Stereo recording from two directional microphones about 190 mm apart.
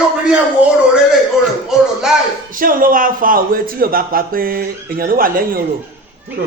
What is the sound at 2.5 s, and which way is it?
A man's voice, 45° right (ahead or behind).